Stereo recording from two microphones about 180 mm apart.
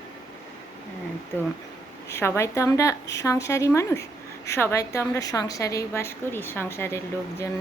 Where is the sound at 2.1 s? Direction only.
15° left (ahead or behind).